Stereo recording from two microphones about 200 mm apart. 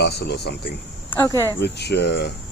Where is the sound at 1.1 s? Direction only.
15° left (ahead or behind).